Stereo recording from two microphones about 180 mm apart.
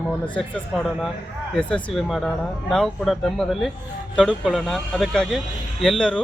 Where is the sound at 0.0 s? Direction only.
5° left (ahead or behind).